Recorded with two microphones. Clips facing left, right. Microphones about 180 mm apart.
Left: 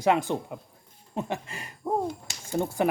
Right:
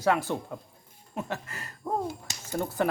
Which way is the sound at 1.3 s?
15° left (ahead or behind).